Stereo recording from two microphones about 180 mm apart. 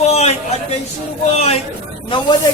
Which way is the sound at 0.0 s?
35° left (ahead or behind).